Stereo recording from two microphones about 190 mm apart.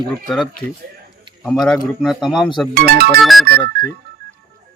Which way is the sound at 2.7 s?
55° right (ahead or behind).